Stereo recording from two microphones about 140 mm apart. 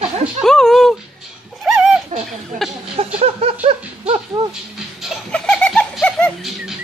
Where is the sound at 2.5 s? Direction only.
70° right (ahead or behind).